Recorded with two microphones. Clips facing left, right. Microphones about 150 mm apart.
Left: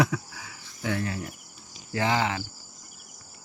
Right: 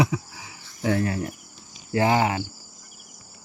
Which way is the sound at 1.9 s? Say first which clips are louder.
Right 5 dB; 30° right (ahead or behind).